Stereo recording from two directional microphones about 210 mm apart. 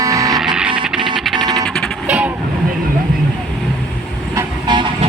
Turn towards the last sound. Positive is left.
turn(degrees=-20)  # may be behind; listen again after turning